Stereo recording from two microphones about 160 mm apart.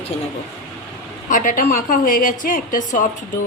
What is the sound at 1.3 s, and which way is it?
A woman's voice, 55° left (ahead or behind).